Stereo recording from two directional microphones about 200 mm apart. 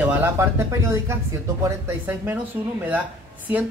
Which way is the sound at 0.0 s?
10° right (ahead or behind).